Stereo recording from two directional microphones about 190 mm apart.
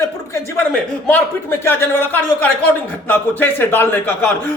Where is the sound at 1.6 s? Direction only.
10° left (ahead or behind).